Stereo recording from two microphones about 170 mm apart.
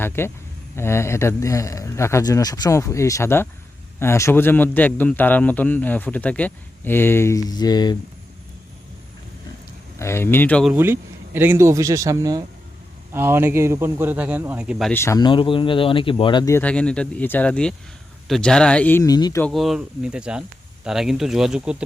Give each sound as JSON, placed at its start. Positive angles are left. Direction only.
{"t": 0.2, "sound": "a man's voice", "side_deg": 15}
{"t": 10.0, "sound": "a man's voice", "side_deg": 15}
{"t": 10.7, "sound": "speech", "side_deg": -15}
{"t": 14.9, "sound": "speech", "side_deg": 15}
{"t": 16.6, "sound": "a man's voice", "side_deg": 5}
{"t": 19.4, "sound": "speech", "side_deg": 0}